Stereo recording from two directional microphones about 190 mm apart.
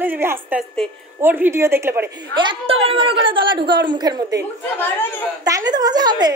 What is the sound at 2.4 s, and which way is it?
A woman's voice, 25° right (ahead or behind).